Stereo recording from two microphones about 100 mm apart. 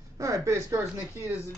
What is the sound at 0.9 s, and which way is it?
Speech, 25° right (ahead or behind).